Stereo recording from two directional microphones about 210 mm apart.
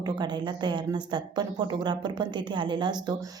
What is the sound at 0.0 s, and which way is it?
Speech, 20° right (ahead or behind).